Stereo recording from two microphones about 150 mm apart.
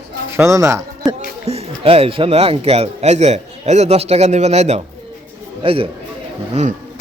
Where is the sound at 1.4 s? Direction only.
45° right (ahead or behind).